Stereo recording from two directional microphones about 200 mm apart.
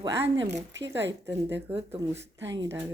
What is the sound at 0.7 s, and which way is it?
Speech, 60° right (ahead or behind).